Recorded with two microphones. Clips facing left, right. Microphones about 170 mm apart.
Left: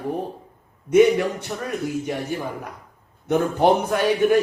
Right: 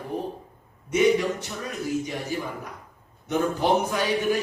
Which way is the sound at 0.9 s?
55° left (ahead or behind).